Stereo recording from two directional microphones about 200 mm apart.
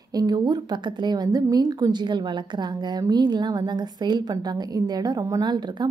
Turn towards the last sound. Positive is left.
turn(degrees=-20)  # may be behind; listen again after turning